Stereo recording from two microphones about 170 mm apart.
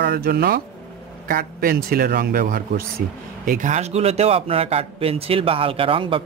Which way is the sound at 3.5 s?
45° right (ahead or behind).